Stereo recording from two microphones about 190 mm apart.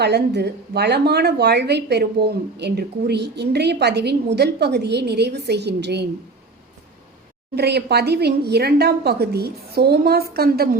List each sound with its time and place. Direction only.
0.0 s a woman's voice: 60° right (ahead or behind)
7.5 s a woman's voice: 60° right (ahead or behind)